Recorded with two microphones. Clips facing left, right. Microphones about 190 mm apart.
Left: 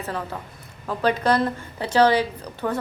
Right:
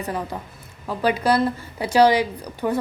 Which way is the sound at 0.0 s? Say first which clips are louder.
Right 2 dB; 15° right (ahead or behind).